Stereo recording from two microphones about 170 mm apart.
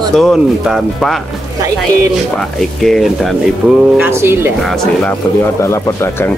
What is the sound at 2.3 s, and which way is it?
Speech, centre (ahead or behind).